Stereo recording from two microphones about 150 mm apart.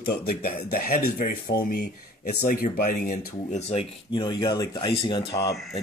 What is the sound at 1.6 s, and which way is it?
Speech, 85° left.